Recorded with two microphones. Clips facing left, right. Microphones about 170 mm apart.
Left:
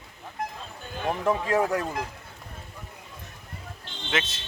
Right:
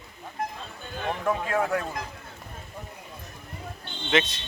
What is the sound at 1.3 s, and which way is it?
Speech, 30° left (ahead or behind).